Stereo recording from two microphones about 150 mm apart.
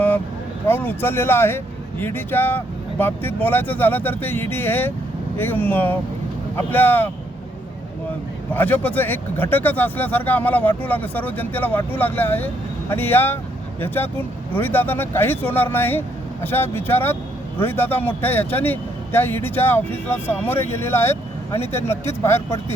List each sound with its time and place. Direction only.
0.7 s speech: 15° left (ahead or behind)
8.5 s speech: 10° left (ahead or behind)